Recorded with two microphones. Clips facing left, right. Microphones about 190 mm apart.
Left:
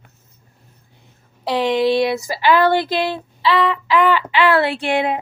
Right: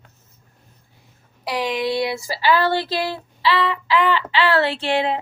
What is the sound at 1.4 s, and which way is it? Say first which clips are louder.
Speech: left 6 dB; 25° left (ahead or behind).